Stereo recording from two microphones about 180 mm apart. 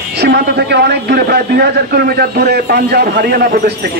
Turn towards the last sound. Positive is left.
turn(degrees=-60)  # may be behind; listen again after turning